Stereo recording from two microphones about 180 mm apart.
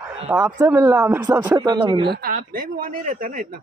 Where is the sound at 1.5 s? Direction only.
25° right (ahead or behind).